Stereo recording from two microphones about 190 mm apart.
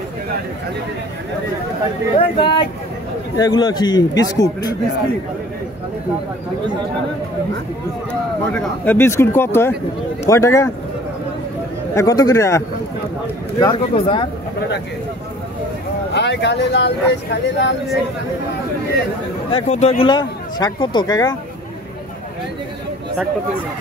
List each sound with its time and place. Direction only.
2.1 s speech: 30° left (ahead or behind)
8.1 s speech: 5° left (ahead or behind)
11.9 s speech: 15° left (ahead or behind)
16.1 s speech: 65° left (ahead or behind)
19.5 s speech: 30° left (ahead or behind)
20.1 s speech: 20° left (ahead or behind)